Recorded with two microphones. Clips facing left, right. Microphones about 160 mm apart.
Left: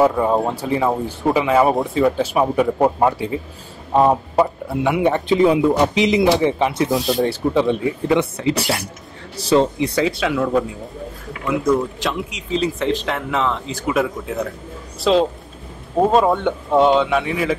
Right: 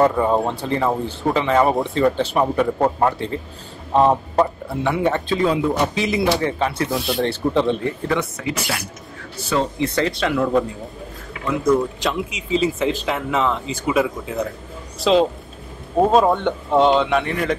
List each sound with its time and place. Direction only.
0.0 s speech: 5° left (ahead or behind)
7.1 s speech: centre (ahead or behind)
8.4 s speech: 30° left (ahead or behind)
9.8 s speech: 10° left (ahead or behind)